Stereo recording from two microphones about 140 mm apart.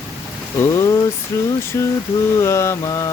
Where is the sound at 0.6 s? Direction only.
25° left (ahead or behind).